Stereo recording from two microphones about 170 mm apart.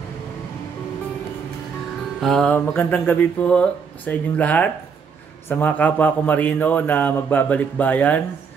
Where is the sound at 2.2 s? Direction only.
5° left (ahead or behind).